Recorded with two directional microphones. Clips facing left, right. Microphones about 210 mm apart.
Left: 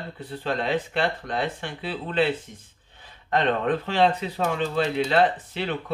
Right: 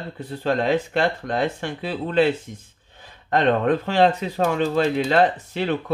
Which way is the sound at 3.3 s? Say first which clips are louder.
Right 4 dB; 45° right (ahead or behind).